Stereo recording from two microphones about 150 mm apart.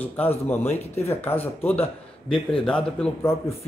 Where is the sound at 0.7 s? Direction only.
45° left (ahead or behind).